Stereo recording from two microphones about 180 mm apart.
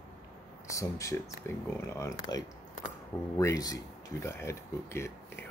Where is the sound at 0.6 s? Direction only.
15° left (ahead or behind).